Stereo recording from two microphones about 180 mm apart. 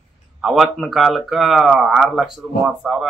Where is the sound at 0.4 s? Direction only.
Centre (ahead or behind).